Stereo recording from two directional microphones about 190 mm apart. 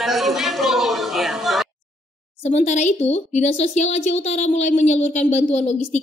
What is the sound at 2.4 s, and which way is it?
Speech, 35° left (ahead or behind).